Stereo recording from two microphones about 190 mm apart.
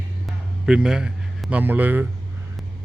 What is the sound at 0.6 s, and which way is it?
A man's voice, 5° right (ahead or behind).